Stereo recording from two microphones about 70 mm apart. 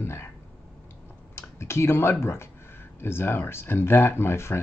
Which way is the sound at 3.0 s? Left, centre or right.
Left.